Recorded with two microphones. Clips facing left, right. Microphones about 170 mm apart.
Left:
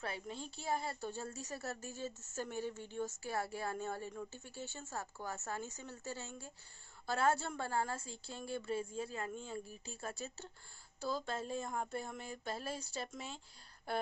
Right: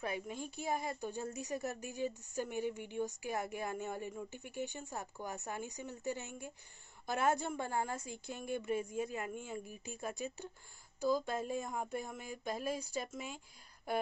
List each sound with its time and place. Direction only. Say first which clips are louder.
0.0 s a woman's voice: right 3 dB; 15° right (ahead or behind)